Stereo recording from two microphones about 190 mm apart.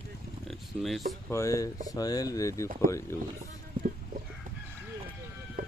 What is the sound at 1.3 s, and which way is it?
Speech, 15° left (ahead or behind).